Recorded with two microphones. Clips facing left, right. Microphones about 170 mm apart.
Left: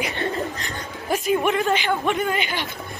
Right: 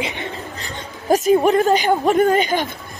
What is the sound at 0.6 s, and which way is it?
A woman's voice, 40° right (ahead or behind).